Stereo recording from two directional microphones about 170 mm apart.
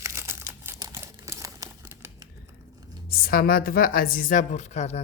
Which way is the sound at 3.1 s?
60° left (ahead or behind).